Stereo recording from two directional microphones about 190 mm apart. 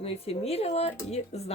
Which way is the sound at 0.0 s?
30° left (ahead or behind).